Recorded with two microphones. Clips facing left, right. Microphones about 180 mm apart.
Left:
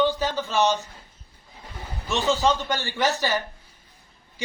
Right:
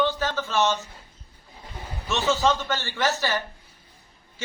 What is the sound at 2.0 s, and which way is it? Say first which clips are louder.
A man's voice: left 1 dB; 15° left (ahead or behind).